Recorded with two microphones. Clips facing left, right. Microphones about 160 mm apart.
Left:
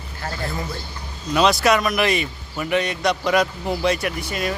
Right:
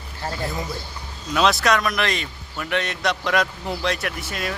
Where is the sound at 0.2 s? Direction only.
25° right (ahead or behind).